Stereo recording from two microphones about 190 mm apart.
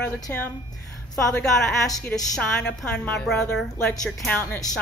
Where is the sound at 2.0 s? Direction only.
10° left (ahead or behind).